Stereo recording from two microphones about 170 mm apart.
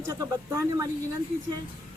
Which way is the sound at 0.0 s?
15° right (ahead or behind).